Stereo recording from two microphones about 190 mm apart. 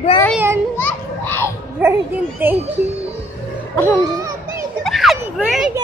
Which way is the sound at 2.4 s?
10° right (ahead or behind).